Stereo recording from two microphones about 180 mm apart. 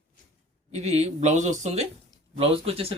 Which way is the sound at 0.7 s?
40° right (ahead or behind).